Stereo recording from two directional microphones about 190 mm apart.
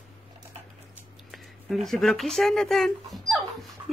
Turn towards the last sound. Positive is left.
turn(degrees=0)  # may be behind; listen again after turning